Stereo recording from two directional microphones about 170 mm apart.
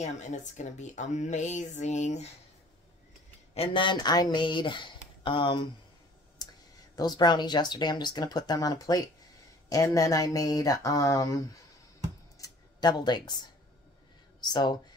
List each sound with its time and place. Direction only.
0.0 s speech: 45° left (ahead or behind)
3.5 s speech: 30° left (ahead or behind)
7.0 s speech: 25° left (ahead or behind)
12.4 s a sound: 25° left (ahead or behind)
14.4 s speech: 25° left (ahead or behind)